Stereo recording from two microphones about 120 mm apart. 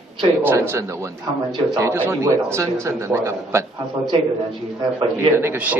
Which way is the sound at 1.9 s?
20° right (ahead or behind).